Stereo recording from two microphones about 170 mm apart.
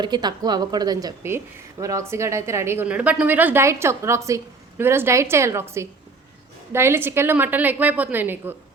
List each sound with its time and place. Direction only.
0.0 s a woman's voice: 25° right (ahead or behind)